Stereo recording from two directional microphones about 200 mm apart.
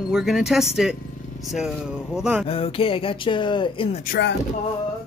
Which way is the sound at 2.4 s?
30° left (ahead or behind).